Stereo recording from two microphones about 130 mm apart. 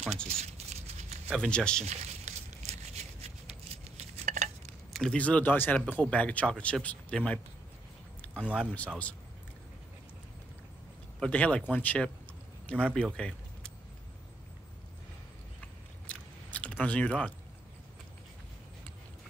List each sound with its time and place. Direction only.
0.3 s a sound: 55° right (ahead or behind)
1.3 s speech: 5° left (ahead or behind)
1.9 s a sound: 60° right (ahead or behind)
3.9 s dishes: 65° right (ahead or behind)
4.9 s speech: 5° left (ahead or behind)
8.7 s speech: 10° left (ahead or behind)
11.1 s speech: 10° left (ahead or behind)
16.1 s biting: 10° left (ahead or behind)